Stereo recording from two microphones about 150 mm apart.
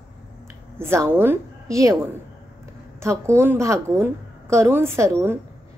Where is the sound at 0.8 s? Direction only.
15° right (ahead or behind).